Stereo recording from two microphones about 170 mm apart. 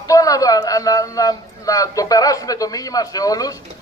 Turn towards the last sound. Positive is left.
turn(degrees=20)  # may be behind; listen again after turning